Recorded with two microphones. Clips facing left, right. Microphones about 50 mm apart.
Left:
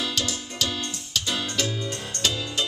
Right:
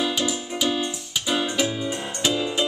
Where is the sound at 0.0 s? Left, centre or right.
Centre.